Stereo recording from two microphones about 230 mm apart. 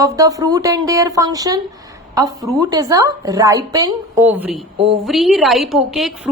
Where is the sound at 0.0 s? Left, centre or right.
Centre.